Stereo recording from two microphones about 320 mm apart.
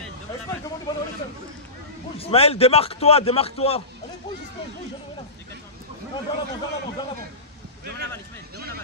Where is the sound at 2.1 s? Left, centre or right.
Centre.